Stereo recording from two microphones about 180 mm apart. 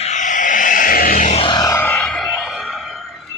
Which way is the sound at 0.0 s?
40° left (ahead or behind).